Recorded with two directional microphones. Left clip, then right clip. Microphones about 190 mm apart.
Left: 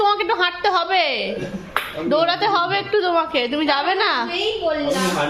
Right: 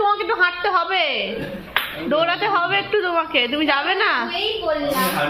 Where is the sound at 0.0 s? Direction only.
20° left (ahead or behind).